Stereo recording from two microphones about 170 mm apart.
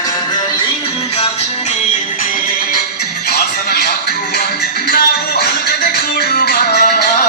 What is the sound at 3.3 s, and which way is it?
Music, 65° left (ahead or behind).